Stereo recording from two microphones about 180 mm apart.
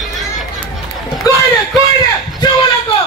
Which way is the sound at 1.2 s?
20° left (ahead or behind).